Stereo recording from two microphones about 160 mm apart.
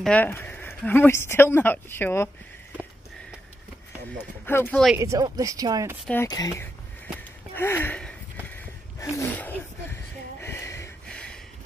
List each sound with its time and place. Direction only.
0.0 s speech: 10° left (ahead or behind)
4.5 s speech: 15° left (ahead or behind)
4.9 s speech: 20° right (ahead or behind)
6.2 s speech: 25° left (ahead or behind)
9.1 s speech: 15° left (ahead or behind)
10.4 s a sound: 15° left (ahead or behind)
11.1 s a sound: 5° left (ahead or behind)